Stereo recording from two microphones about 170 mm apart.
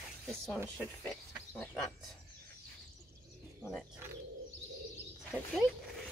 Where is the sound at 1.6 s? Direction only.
5° left (ahead or behind).